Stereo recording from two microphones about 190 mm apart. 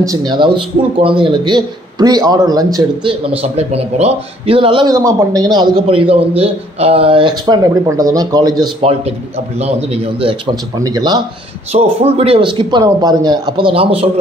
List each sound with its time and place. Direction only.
0.0 s a man's voice: 20° right (ahead or behind)
11.7 s a man's voice: 30° right (ahead or behind)